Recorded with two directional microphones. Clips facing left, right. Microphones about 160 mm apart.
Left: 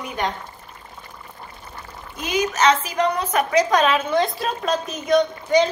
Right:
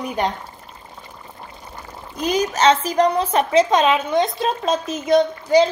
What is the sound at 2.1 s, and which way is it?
A woman's voice, 35° right (ahead or behind).